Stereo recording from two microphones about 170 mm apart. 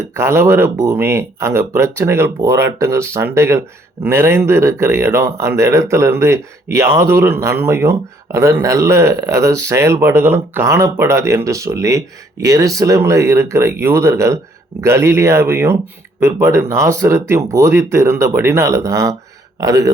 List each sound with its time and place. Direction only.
0.0 s a man's voice: 15° right (ahead or behind)